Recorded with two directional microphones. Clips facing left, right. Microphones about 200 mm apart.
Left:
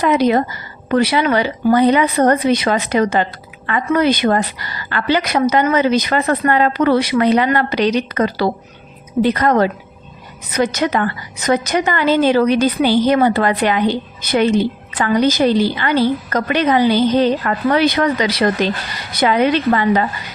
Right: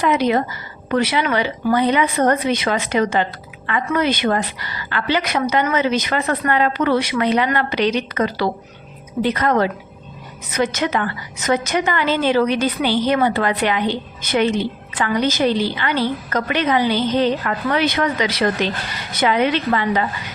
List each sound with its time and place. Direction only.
0.0 s a woman's voice: 40° left (ahead or behind)